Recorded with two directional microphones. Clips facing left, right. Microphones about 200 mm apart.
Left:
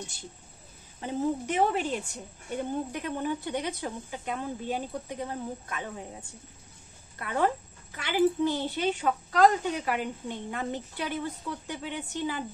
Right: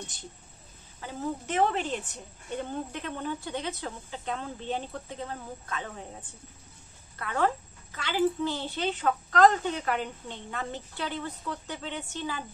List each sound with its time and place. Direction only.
1.0 s a child's voice: 15° left (ahead or behind)
7.2 s a child's voice: 15° left (ahead or behind)